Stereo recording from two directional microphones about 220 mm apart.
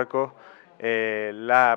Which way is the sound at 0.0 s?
15° left (ahead or behind).